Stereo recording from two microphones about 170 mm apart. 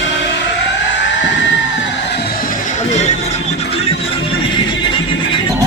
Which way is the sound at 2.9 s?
40° left (ahead or behind).